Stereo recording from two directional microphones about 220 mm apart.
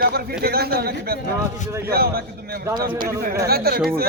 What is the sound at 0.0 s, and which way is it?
Speech, 45° right (ahead or behind).